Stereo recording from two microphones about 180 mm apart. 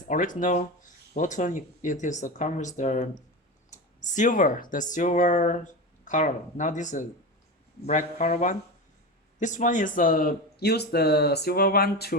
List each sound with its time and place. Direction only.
0.1 s a man's voice: 45° left (ahead or behind)